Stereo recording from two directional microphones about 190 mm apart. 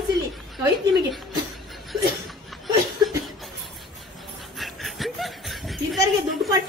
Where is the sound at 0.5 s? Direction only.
Centre (ahead or behind).